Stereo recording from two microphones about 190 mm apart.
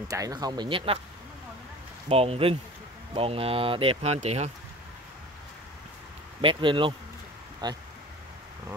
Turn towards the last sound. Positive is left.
turn(degrees=-20)  # may be behind; listen again after turning